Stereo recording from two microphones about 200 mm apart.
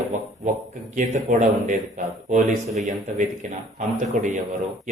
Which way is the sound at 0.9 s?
35° right (ahead or behind).